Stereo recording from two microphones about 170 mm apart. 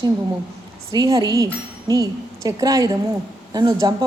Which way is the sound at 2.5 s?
20° right (ahead or behind).